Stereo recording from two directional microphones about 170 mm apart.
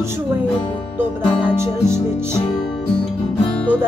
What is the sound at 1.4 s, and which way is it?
Music, 15° right (ahead or behind).